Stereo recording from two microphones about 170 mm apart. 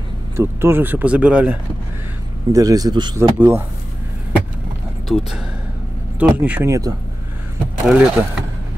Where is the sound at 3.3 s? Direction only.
10° right (ahead or behind).